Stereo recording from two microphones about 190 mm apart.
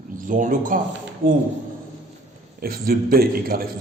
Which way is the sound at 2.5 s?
50° right (ahead or behind).